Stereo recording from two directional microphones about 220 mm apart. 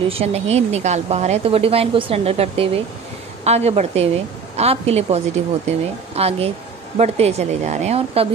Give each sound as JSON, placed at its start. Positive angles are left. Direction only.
{"t": 0.1, "sound": "a woman's voice", "side_deg": -25}